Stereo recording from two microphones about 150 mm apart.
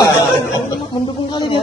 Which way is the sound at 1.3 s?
30° left (ahead or behind).